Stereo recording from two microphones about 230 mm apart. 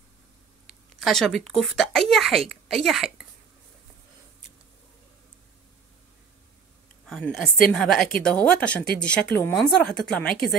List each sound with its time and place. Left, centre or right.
0.9 s a woman's voice: centre
7.1 s speech: centre